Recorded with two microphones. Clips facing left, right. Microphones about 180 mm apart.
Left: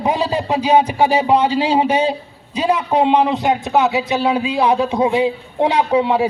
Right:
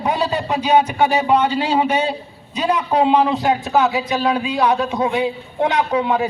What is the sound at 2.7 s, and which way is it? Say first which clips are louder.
A man's voice: left 1 dB; 25° left (ahead or behind).